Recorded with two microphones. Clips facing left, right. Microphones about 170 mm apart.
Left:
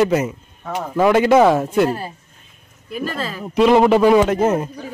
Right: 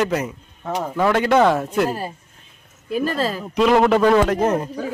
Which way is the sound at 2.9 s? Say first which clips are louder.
Right 4 dB; 40° right (ahead or behind).